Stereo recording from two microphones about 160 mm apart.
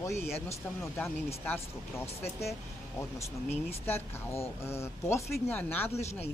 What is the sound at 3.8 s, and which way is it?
Speech, 15° left (ahead or behind).